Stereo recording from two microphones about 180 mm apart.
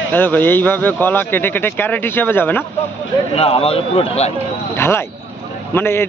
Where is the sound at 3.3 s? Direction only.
30° left (ahead or behind).